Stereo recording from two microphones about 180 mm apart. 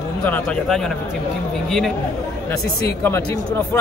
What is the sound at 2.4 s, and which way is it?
A man's voice, 15° left (ahead or behind).